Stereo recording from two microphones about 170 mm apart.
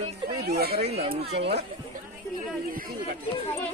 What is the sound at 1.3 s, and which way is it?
Speech, 80° right.